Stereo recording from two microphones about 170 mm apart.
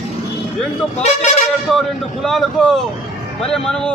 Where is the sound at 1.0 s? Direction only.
45° left (ahead or behind).